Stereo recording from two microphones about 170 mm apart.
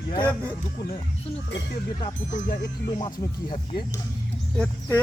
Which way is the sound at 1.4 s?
90° left.